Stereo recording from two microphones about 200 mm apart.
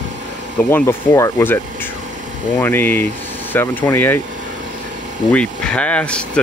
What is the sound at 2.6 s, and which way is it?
Speech, 10° left (ahead or behind).